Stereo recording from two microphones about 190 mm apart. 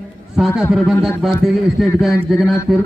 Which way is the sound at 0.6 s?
Centre (ahead or behind).